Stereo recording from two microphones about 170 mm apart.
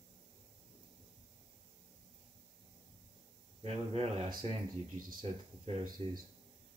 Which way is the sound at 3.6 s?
35° right (ahead or behind).